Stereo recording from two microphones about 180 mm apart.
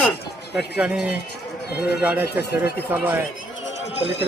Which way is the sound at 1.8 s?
65° left (ahead or behind).